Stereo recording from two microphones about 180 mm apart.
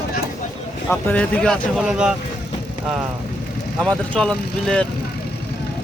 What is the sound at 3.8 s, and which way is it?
Speech, 5° left (ahead or behind).